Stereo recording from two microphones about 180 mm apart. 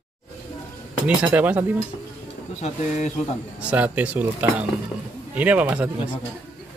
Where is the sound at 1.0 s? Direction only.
10° right (ahead or behind).